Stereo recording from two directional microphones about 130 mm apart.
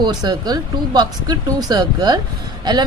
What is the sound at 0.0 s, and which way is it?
Speech, 35° right (ahead or behind).